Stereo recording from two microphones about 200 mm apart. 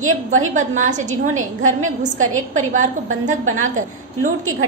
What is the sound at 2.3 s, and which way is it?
A woman's voice, 90° right.